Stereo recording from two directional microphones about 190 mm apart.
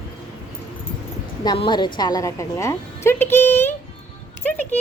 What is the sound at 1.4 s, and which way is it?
A woman's voice, 25° left (ahead or behind).